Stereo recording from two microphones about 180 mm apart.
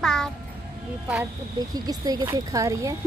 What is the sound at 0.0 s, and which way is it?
Music, 5° left (ahead or behind).